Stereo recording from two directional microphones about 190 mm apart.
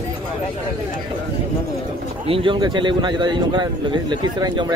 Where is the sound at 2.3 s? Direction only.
25° right (ahead or behind).